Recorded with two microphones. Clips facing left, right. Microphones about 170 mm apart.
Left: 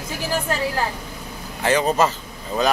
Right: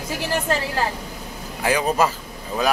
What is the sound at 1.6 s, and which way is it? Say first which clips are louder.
Speech: left 1 dB; 10° right (ahead or behind).